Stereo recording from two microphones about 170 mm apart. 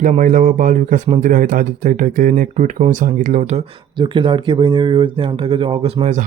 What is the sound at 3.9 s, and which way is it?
Speech, 30° right (ahead or behind).